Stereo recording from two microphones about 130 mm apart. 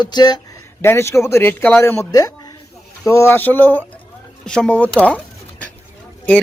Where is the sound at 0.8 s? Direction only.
20° left (ahead or behind).